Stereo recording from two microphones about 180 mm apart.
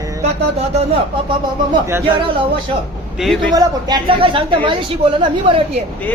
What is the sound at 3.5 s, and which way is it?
Speech, 20° right (ahead or behind).